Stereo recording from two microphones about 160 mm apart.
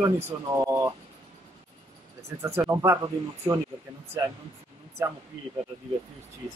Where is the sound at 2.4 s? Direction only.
15° right (ahead or behind).